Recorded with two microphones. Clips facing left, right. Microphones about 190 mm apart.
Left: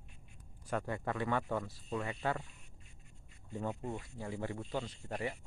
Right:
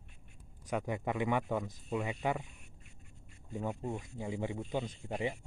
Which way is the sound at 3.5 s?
15° right (ahead or behind).